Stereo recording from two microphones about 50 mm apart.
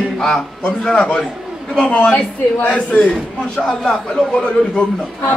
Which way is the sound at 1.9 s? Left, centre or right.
Left.